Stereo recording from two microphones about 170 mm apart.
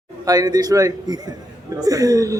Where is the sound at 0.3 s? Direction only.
20° right (ahead or behind).